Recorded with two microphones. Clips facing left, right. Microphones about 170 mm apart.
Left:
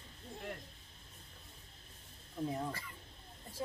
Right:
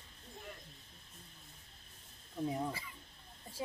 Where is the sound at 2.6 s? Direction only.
5° right (ahead or behind).